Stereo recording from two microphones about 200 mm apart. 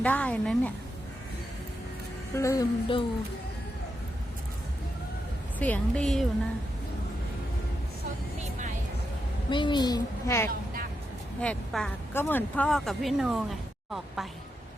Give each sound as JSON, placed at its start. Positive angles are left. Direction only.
{"t": 0.0, "sound": "a woman's voice", "side_deg": 5}
{"t": 2.3, "sound": "a woman's voice", "side_deg": 15}
{"t": 5.5, "sound": "speech", "side_deg": 10}
{"t": 9.5, "sound": "a woman's voice", "side_deg": 25}